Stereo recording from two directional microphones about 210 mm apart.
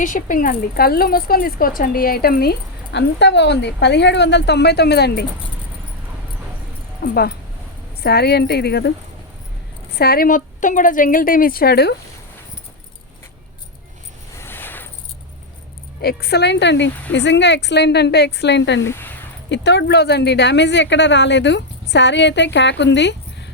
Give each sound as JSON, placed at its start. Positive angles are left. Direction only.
{"t": 0.0, "sound": "speech", "side_deg": 40}
{"t": 7.0, "sound": "speech", "side_deg": 50}
{"t": 9.9, "sound": "a woman's voice", "side_deg": 45}
{"t": 14.3, "sound": "a sound", "side_deg": 10}
{"t": 16.0, "sound": "speech", "side_deg": 50}
{"t": 18.9, "sound": "speech", "side_deg": 10}
{"t": 19.5, "sound": "speech", "side_deg": 55}